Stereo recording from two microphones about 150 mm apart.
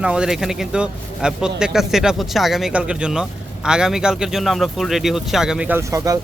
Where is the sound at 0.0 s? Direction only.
5° right (ahead or behind).